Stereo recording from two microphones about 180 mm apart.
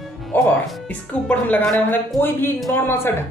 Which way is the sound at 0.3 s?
10° left (ahead or behind).